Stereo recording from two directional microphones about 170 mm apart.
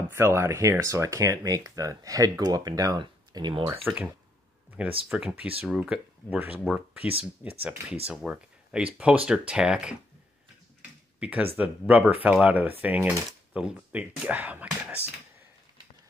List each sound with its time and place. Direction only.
0.1 s speech: 15° right (ahead or behind)
4.8 s speech: 5° right (ahead or behind)
11.1 s speech: 10° right (ahead or behind)